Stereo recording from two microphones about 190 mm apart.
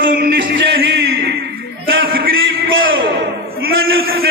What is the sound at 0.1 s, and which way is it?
Music, 60° right (ahead or behind).